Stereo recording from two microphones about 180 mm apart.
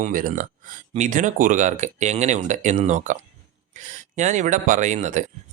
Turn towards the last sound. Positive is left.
turn(degrees=-40)  # may be behind; listen again after turning